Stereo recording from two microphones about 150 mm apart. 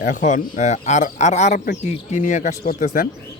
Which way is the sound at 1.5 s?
80° left.